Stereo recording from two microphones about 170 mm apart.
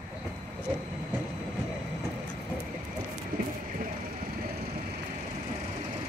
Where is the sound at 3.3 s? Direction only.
60° right (ahead or behind).